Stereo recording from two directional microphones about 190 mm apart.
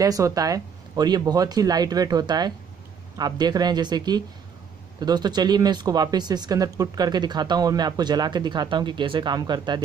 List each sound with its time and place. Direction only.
0.0 s speech: 20° right (ahead or behind)